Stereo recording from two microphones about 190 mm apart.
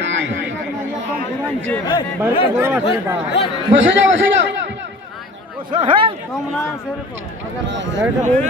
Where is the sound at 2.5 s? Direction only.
10° right (ahead or behind).